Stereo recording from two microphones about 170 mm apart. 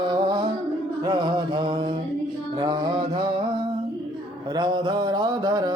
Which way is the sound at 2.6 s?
25° right (ahead or behind).